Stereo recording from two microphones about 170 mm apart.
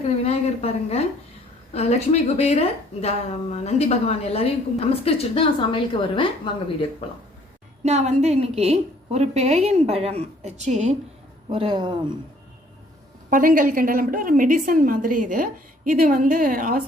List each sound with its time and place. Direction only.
0.3 s a woman's voice: 40° left (ahead or behind)
7.9 s a woman's voice: 40° right (ahead or behind)
13.3 s a woman's voice: 55° right (ahead or behind)